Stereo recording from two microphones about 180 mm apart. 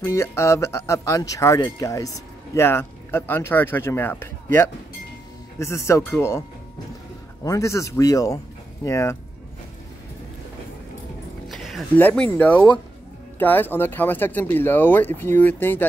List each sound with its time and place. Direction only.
0.0 s speech: 15° left (ahead or behind)
7.4 s speech: 15° left (ahead or behind)
11.4 s music: centre (ahead or behind)
12.0 s speech: 10° left (ahead or behind)